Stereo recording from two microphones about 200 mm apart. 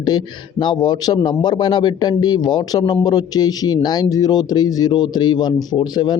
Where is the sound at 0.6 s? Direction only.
20° left (ahead or behind).